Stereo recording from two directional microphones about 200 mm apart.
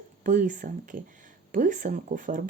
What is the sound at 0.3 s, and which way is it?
Speech, 40° right (ahead or behind).